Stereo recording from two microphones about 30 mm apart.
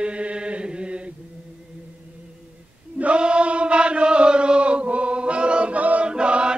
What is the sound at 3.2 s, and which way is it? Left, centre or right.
Chant, right.